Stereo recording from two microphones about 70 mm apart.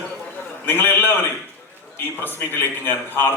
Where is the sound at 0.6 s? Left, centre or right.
Left.